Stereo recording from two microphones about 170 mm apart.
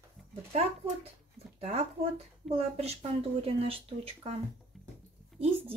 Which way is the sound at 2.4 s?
40° right (ahead or behind).